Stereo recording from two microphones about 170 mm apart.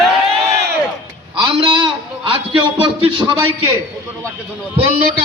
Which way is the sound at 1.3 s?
30° right (ahead or behind).